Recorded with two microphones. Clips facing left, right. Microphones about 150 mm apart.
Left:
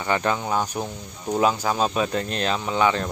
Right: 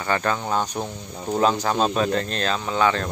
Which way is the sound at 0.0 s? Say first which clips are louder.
Even; 15° left (ahead or behind).